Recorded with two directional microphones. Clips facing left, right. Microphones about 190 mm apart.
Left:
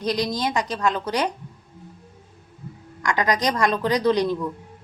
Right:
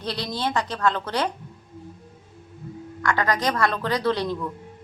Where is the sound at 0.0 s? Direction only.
15° left (ahead or behind).